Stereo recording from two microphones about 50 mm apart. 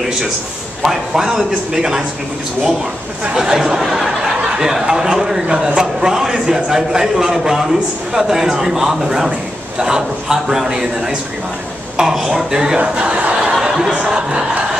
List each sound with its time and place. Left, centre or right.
0.8 s a man's voice: centre
3.3 s a man's voice: centre
13.6 s a sound: centre
14.0 s a man's voice: centre